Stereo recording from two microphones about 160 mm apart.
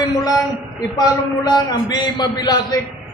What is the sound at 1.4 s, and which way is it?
A man's voice, 25° left (ahead or behind).